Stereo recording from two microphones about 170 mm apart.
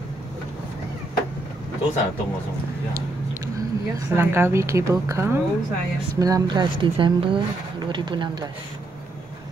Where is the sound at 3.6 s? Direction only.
15° right (ahead or behind).